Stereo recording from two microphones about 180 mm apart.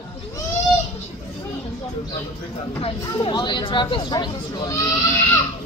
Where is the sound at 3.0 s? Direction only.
25° left (ahead or behind).